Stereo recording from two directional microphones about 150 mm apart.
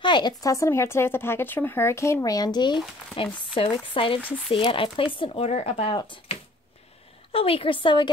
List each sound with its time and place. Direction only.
0.0 s speech: 30° left (ahead or behind)
7.3 s speech: 40° left (ahead or behind)